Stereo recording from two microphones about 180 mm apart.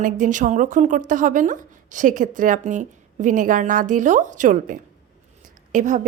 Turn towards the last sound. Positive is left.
turn(degrees=-45)  # may be behind; listen again after turning